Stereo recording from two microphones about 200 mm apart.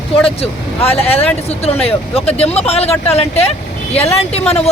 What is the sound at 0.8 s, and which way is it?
Speech, 30° left (ahead or behind).